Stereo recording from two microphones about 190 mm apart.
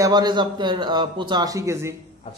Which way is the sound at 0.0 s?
20° right (ahead or behind).